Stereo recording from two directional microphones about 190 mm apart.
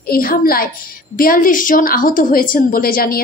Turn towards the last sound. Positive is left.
turn(degrees=50)  # may be behind; listen again after turning